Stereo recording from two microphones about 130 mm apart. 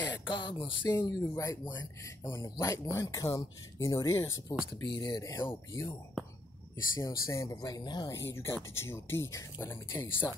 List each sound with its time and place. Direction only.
0.3 s speech: 35° left (ahead or behind)
0.8 s speech: 25° left (ahead or behind)
5.3 s speech: 20° left (ahead or behind)
7.0 s speech: 25° left (ahead or behind)
8.2 s speech: 20° left (ahead or behind)